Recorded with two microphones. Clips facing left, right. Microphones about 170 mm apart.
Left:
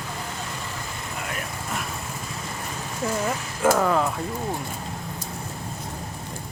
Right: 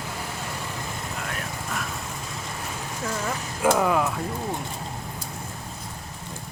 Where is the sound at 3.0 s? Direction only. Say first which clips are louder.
Left 4 dB; 30° left (ahead or behind).